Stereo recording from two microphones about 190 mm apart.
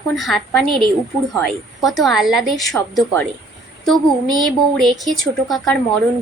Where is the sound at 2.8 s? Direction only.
10° left (ahead or behind).